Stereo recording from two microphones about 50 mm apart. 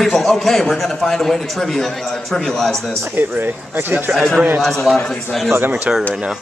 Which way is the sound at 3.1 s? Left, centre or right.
Right.